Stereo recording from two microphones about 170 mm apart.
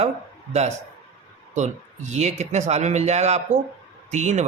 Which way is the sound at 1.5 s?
45° right (ahead or behind).